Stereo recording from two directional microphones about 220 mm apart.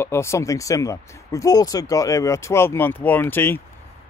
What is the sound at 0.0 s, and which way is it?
Speech, 10° left (ahead or behind).